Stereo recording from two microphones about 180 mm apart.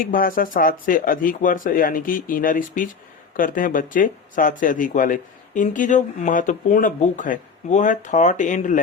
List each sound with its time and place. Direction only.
0.0 s speech: 50° left (ahead or behind)